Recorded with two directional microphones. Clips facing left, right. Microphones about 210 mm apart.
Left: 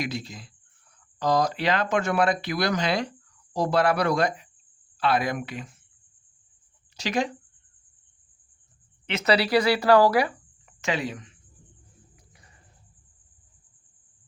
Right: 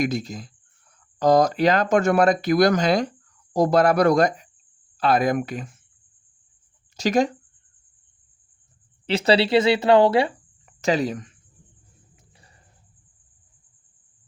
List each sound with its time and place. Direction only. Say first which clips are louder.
0.0 s speech: right 7 dB; 45° right (ahead or behind)
6.9 s speech: right 7 dB; 45° right (ahead or behind)
9.0 s speech: right 4 dB; 30° right (ahead or behind)
10.8 s speech: right 7 dB; 40° right (ahead or behind)